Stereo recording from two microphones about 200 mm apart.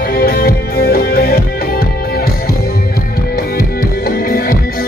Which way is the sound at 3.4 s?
50° left (ahead or behind).